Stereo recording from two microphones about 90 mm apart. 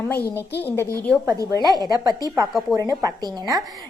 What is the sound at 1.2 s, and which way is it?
A woman's voice, 45° right (ahead or behind).